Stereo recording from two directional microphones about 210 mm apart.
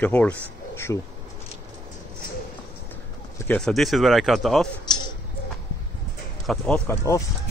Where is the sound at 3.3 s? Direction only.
10° left (ahead or behind).